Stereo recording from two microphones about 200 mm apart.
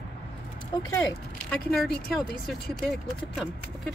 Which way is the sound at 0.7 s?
15° left (ahead or behind).